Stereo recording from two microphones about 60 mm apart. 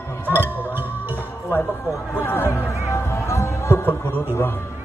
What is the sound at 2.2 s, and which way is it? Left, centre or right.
Speech, left.